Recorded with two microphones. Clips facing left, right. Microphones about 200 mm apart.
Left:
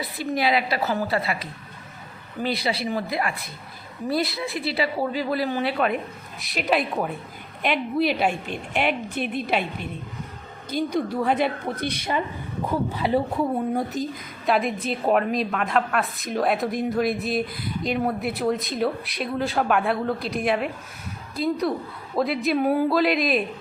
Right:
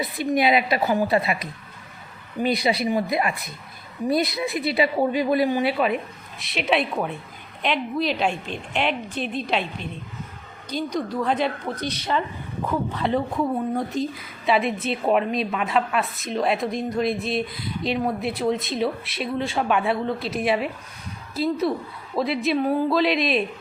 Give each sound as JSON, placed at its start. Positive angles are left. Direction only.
{"t": 0.0, "sound": "a woman's voice", "side_deg": -20}
{"t": 10.9, "sound": "a woman's voice", "side_deg": 10}